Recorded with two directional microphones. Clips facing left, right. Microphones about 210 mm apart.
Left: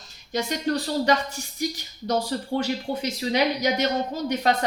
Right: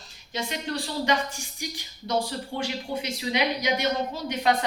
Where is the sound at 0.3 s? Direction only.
40° left (ahead or behind).